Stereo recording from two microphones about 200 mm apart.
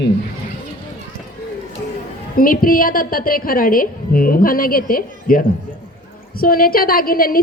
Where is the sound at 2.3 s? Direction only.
45° left (ahead or behind).